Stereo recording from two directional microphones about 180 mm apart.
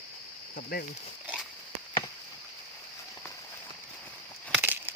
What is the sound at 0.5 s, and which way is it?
Speech, 60° left (ahead or behind).